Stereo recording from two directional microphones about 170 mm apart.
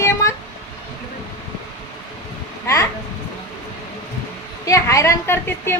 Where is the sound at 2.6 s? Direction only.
20° left (ahead or behind).